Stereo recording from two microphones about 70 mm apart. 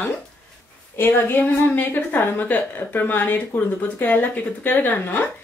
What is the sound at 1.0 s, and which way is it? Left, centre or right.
A woman's voice, left.